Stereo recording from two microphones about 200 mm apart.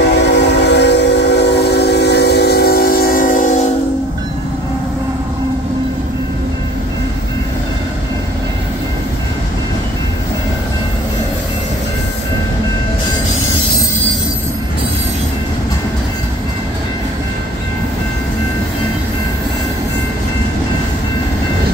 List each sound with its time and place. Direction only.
0.0 s train: 60° left (ahead or behind); by 3.6 s 40° left (ahead or behind)